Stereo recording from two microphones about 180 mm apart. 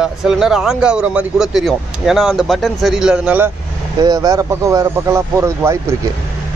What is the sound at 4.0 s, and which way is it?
Speech, 20° right (ahead or behind).